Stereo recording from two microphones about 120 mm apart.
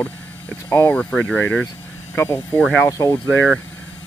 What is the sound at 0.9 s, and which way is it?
Speech, 10° left (ahead or behind).